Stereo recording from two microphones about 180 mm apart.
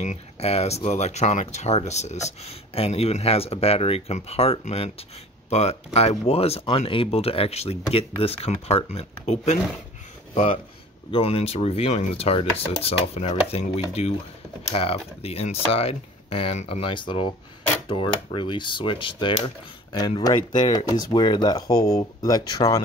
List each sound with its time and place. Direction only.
0.0 s speech: 40° left (ahead or behind)
17.8 s mechanisms: 25° left (ahead or behind)